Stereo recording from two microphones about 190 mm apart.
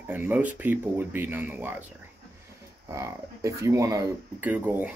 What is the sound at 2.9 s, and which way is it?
Speech, 15° right (ahead or behind).